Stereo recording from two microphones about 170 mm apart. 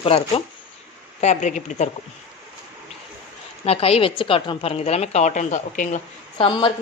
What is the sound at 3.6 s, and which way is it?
Speech, 35° left (ahead or behind).